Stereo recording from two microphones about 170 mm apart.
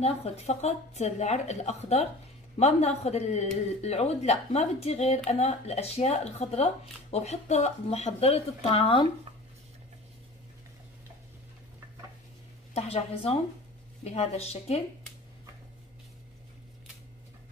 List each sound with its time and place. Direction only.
0.0 s speech: 35° left (ahead or behind)
12.7 s speech: 35° left (ahead or behind)